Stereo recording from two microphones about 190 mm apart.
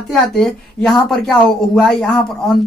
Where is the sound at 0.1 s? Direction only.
5° left (ahead or behind).